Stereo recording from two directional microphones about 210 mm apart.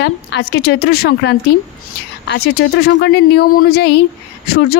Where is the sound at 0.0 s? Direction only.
55° left (ahead or behind).